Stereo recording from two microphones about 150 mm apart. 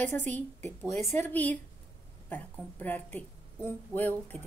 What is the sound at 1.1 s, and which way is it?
Speech, 15° left (ahead or behind).